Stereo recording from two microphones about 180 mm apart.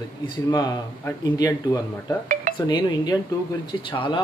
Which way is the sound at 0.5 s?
20° left (ahead or behind).